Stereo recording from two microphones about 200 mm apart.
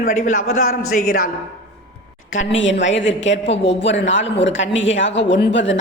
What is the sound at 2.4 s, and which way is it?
A woman's voice, 70° left (ahead or behind).